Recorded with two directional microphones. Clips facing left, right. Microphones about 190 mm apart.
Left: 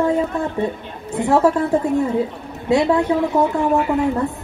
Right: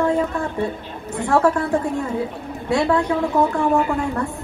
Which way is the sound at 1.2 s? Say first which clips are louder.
Left 2 dB; 20° left (ahead or behind).